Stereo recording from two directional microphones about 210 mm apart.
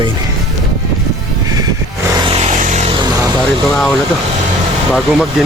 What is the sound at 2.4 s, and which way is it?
Vehicle, 35° right (ahead or behind).